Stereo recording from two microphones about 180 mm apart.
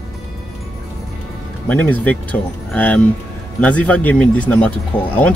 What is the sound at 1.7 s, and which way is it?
Speech, 10° left (ahead or behind).